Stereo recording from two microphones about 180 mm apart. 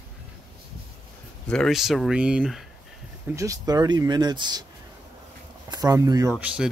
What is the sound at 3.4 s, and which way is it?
Speech, 20° right (ahead or behind).